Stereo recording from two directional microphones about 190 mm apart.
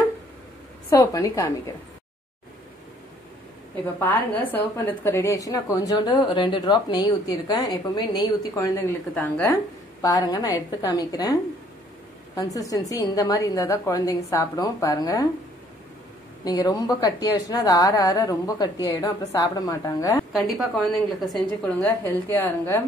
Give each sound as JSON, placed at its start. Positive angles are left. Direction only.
{"t": 0.8, "sound": "a woman's voice", "side_deg": 15}
{"t": 3.8, "sound": "a woman's voice", "side_deg": 10}
{"t": 12.4, "sound": "a woman's voice", "side_deg": 20}
{"t": 16.4, "sound": "a woman's voice", "side_deg": 20}
{"t": 20.3, "sound": "a woman's voice", "side_deg": 0}
{"t": 21.8, "sound": "a woman's voice", "side_deg": 10}